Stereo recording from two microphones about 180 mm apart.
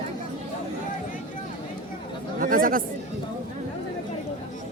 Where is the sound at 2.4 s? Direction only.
50° right (ahead or behind).